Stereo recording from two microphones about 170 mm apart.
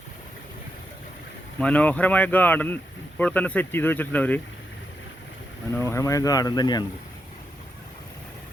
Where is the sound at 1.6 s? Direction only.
10° left (ahead or behind).